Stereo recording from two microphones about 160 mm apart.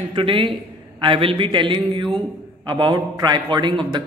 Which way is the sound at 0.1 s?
35° right (ahead or behind).